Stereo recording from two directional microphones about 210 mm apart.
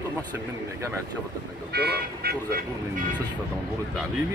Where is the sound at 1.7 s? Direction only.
50° right (ahead or behind).